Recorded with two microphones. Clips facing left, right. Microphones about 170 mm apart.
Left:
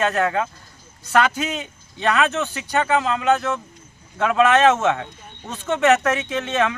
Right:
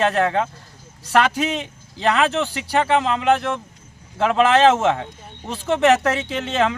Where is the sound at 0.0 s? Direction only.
30° right (ahead or behind).